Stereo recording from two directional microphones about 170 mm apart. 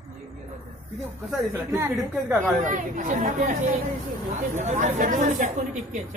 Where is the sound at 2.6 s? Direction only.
45° right (ahead or behind).